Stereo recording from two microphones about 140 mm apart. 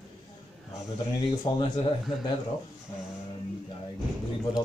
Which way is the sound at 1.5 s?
30° left (ahead or behind).